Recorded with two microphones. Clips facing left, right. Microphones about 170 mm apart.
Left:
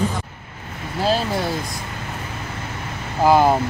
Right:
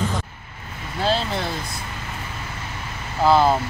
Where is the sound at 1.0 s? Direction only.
10° left (ahead or behind).